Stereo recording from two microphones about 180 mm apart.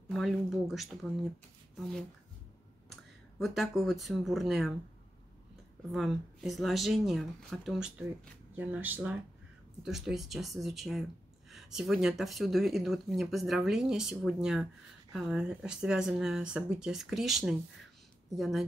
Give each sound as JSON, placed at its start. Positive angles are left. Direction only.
{"t": 0.1, "sound": "speech", "side_deg": 0}
{"t": 3.3, "sound": "speech", "side_deg": 0}
{"t": 5.9, "sound": "speech", "side_deg": 0}